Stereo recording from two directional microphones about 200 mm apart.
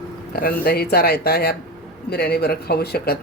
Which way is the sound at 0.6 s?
50° left (ahead or behind).